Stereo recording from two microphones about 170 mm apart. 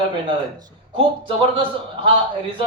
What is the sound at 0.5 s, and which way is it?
A man's voice, 25° right (ahead or behind).